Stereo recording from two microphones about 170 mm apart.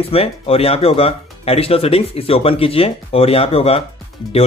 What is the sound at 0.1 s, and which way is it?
Speech, 35° left (ahead or behind).